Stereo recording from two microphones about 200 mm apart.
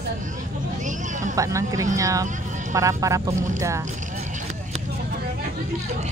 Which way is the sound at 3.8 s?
40° right (ahead or behind).